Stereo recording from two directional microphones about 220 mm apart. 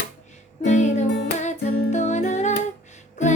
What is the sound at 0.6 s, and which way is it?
Music, 30° left (ahead or behind).